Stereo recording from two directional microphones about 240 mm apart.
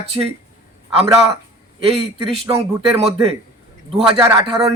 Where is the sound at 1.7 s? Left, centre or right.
Right.